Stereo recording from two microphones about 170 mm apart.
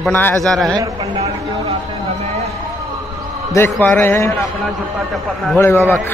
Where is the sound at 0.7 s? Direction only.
25° right (ahead or behind).